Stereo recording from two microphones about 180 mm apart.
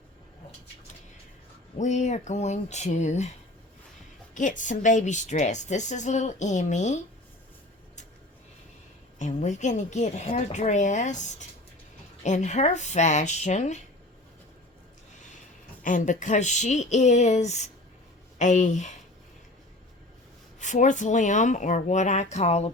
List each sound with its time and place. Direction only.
1.8 s a woman's voice: 40° left (ahead or behind)
4.4 s a woman's voice: 45° left (ahead or behind)
9.1 s a woman's voice: 40° left (ahead or behind)
15.8 s a woman's voice: 45° left (ahead or behind)
20.6 s speech: 40° left (ahead or behind)